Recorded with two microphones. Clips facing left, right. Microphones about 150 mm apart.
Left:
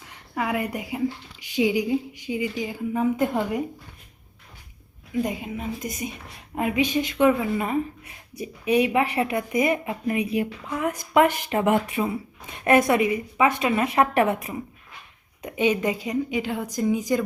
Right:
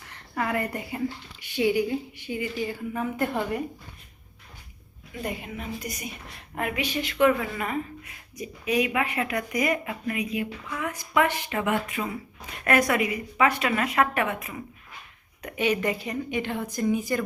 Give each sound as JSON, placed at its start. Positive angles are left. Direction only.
{"t": 0.0, "sound": "a woman's voice", "side_deg": 15}
{"t": 5.2, "sound": "a woman's voice", "side_deg": 15}
{"t": 11.9, "sound": "a woman's voice", "side_deg": 25}
{"t": 15.4, "sound": "a woman's voice", "side_deg": 20}